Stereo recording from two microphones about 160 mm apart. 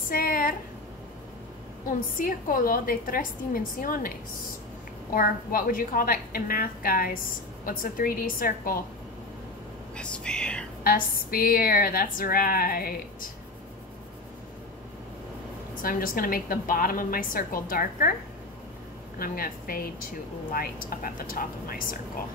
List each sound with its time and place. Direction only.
0.1 s a sound: 65° left (ahead or behind)
1.9 s a woman's voice: 60° left (ahead or behind)
5.1 s a woman's voice: 65° left (ahead or behind)
9.9 s whispering: 5° left (ahead or behind)
10.8 s a woman's voice: 65° left (ahead or behind)
15.7 s a woman's voice: 60° left (ahead or behind)
19.1 s a woman's voice: 65° left (ahead or behind)